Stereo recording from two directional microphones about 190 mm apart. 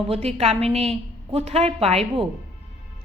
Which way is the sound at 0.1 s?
35° right (ahead or behind).